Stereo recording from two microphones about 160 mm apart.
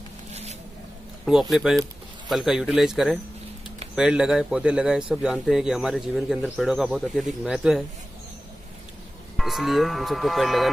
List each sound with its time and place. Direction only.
0.3 s zipper: 45° right (ahead or behind)
1.5 s a man's voice: centre (ahead or behind)
9.4 s a man's voice: centre (ahead or behind)